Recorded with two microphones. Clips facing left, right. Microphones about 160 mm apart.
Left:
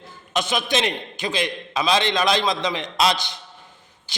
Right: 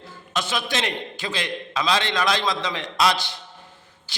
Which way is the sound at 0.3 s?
20° left (ahead or behind).